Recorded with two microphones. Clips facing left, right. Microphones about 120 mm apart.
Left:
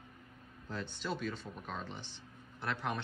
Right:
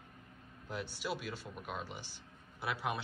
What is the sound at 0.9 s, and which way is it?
Speech, 10° right (ahead or behind).